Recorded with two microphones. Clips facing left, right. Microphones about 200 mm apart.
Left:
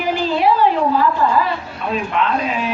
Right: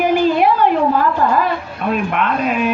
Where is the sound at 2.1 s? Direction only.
55° right (ahead or behind).